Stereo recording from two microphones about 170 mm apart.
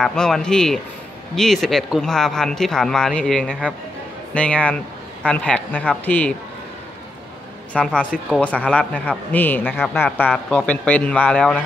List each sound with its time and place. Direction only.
0.0 s a man's voice: 5° left (ahead or behind)
7.7 s a man's voice: 5° left (ahead or behind)